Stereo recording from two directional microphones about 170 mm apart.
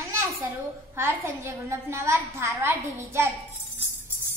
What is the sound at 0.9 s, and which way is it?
Music, 15° right (ahead or behind).